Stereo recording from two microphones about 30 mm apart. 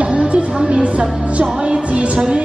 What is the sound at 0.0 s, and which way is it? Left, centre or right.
Music, right.